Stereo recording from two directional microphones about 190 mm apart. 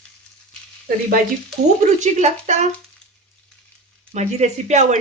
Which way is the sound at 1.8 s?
40° right (ahead or behind).